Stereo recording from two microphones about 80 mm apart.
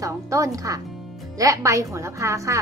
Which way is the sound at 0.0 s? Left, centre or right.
Right.